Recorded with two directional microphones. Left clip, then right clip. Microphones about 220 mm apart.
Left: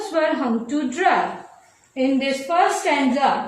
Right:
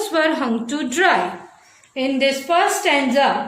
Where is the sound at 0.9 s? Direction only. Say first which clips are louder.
Right 2 dB; 50° right (ahead or behind).